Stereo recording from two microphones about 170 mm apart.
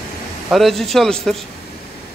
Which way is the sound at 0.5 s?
Centre (ahead or behind).